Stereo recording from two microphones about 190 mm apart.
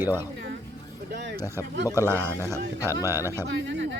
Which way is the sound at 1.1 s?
65° right (ahead or behind).